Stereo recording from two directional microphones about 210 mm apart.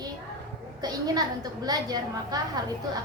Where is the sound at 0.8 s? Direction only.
20° right (ahead or behind).